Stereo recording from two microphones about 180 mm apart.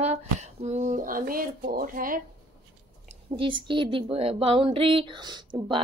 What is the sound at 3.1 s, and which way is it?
Speech, 30° right (ahead or behind).